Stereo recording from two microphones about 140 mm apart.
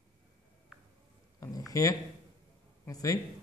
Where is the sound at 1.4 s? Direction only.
25° left (ahead or behind).